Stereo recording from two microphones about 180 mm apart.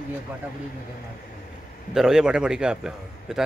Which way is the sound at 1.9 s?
5° right (ahead or behind).